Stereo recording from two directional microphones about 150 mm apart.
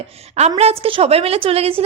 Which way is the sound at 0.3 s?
45° right (ahead or behind).